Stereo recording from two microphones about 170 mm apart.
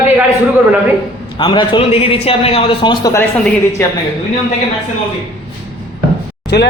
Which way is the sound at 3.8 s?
15° left (ahead or behind).